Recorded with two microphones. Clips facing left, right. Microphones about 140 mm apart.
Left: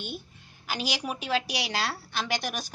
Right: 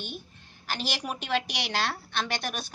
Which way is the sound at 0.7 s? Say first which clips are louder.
Left 1 dB; 5° left (ahead or behind).